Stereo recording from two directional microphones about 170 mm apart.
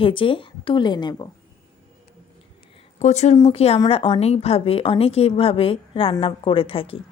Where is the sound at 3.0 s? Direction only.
40° left (ahead or behind).